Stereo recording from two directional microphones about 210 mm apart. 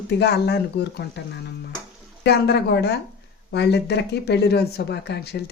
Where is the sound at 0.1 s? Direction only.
50° left (ahead or behind).